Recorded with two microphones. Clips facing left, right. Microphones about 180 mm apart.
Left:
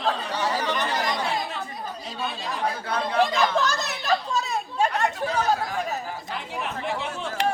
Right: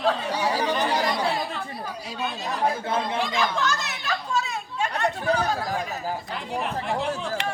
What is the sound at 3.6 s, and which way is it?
Chatter, 40° left (ahead or behind).